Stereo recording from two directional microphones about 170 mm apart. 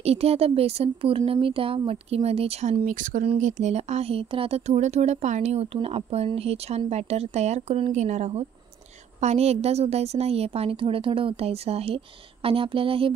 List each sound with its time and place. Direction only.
0.0 s speech: 35° right (ahead or behind)
2.8 s speech: 50° right (ahead or behind); by 13.1 s 30° right (ahead or behind)